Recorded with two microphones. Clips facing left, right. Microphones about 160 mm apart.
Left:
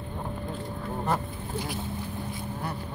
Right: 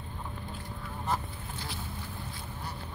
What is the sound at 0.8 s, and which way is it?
Honk, 60° left (ahead or behind).